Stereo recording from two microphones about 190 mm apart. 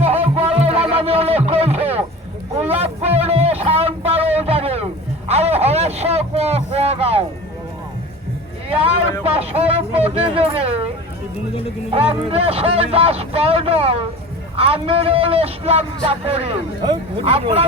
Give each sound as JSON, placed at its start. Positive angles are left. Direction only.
{"t": 0.0, "sound": "music", "side_deg": -30}
{"t": 2.6, "sound": "a sound", "side_deg": -35}
{"t": 5.3, "sound": "speech", "side_deg": -35}
{"t": 9.2, "sound": "a man's voice", "side_deg": -35}
{"t": 11.9, "sound": "a man's voice", "side_deg": -30}